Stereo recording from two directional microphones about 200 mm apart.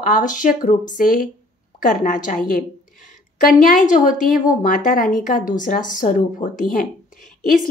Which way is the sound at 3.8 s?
40° left (ahead or behind).